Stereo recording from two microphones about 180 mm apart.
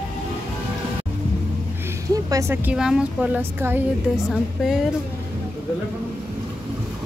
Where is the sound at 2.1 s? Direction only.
20° right (ahead or behind).